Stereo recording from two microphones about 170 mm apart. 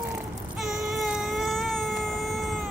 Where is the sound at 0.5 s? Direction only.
Centre (ahead or behind).